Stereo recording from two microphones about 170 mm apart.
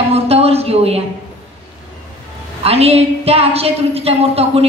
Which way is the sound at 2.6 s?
35° right (ahead or behind).